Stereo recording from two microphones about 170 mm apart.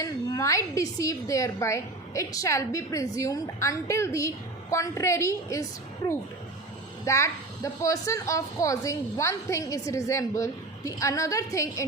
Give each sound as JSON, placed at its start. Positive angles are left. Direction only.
{"t": 0.0, "sound": "a woman's voice", "side_deg": 20}
{"t": 7.0, "sound": "a woman's voice", "side_deg": 20}